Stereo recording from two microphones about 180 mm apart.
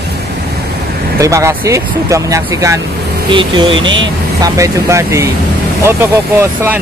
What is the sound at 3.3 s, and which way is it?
Speech, 25° right (ahead or behind).